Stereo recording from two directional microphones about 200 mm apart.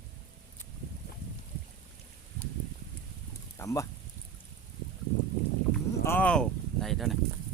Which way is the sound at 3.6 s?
15° left (ahead or behind).